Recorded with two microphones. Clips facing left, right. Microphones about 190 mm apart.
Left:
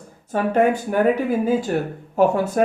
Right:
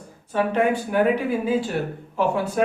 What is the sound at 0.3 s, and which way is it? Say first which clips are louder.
Speech: left 3 dB; 45° left (ahead or behind).